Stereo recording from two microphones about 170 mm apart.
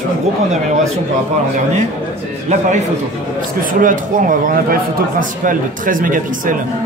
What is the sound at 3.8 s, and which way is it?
A man's voice, 50° right (ahead or behind).